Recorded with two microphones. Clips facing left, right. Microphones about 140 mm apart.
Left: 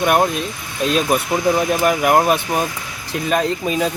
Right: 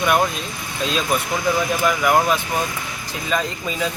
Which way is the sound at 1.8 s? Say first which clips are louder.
Left 2 dB; 45° left (ahead or behind).